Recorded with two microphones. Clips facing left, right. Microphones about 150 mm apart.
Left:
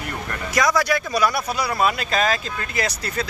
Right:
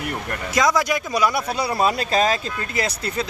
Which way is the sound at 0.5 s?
20° right (ahead or behind).